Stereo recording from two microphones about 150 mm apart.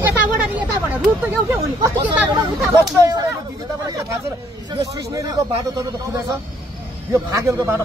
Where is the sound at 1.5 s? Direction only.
25° right (ahead or behind).